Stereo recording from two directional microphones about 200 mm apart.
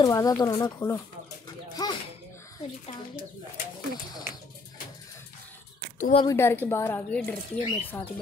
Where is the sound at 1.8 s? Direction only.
20° left (ahead or behind).